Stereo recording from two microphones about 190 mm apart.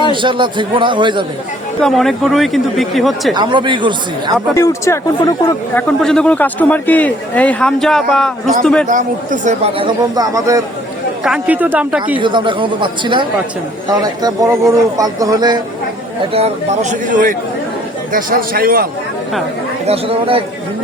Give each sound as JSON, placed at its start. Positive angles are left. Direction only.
{"t": 0.1, "sound": "speech", "side_deg": -25}
{"t": 1.8, "sound": "speech", "side_deg": 0}
{"t": 3.3, "sound": "speech", "side_deg": -25}
{"t": 4.5, "sound": "a man's voice", "side_deg": 15}
{"t": 5.7, "sound": "a man's voice", "side_deg": 5}
{"t": 8.9, "sound": "speech", "side_deg": -40}
{"t": 11.2, "sound": "speech", "side_deg": -5}
{"t": 12.2, "sound": "speech", "side_deg": -25}
{"t": 16.3, "sound": "a man's voice", "side_deg": -35}
{"t": 19.9, "sound": "speech", "side_deg": -30}